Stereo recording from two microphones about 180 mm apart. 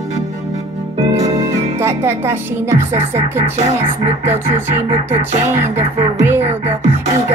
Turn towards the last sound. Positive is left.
turn(degrees=-40)  # may be behind; listen again after turning